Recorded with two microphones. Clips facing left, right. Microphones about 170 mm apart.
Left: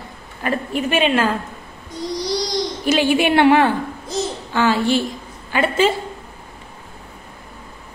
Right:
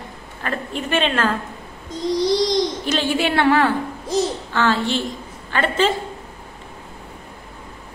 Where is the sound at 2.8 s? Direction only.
10° left (ahead or behind).